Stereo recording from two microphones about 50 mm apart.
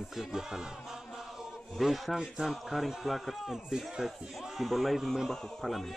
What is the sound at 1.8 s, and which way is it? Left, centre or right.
A man's voice, centre.